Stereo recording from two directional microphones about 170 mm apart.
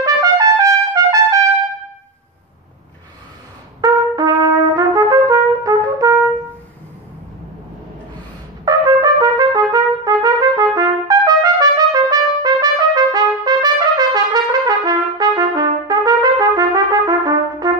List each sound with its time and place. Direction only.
0.0 s trumpet: 20° right (ahead or behind)
3.8 s brass instrument: 20° right (ahead or behind)
8.6 s trumpet: 20° right (ahead or behind)